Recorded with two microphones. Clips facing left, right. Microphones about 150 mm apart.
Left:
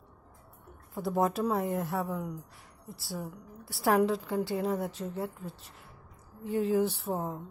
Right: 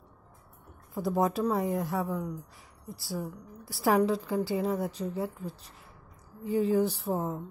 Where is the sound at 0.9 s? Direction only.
Centre (ahead or behind).